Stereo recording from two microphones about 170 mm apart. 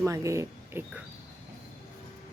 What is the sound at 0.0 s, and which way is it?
Speech, 20° right (ahead or behind).